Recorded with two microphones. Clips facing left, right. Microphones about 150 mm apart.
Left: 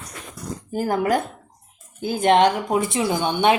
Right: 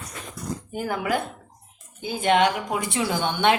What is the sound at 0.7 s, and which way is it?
Speech, 35° left (ahead or behind).